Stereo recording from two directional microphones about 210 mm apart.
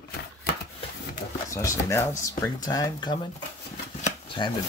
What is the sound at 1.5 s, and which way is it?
Speech, 15° left (ahead or behind).